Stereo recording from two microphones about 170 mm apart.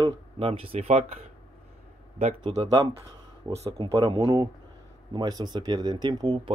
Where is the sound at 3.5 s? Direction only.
35° right (ahead or behind).